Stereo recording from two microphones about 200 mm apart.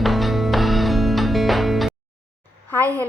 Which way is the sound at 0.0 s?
Centre (ahead or behind).